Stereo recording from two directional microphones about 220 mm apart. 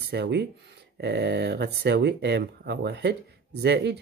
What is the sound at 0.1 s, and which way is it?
Speech, 50° right (ahead or behind).